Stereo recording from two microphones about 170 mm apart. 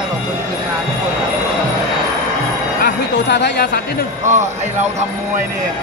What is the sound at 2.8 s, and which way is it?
Speech, 90° left.